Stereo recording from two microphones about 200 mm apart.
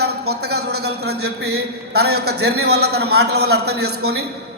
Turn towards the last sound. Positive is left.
turn(degrees=-55)  # may be behind; listen again after turning